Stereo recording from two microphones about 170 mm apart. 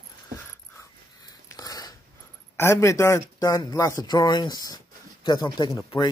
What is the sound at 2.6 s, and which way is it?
Speech, 15° left (ahead or behind).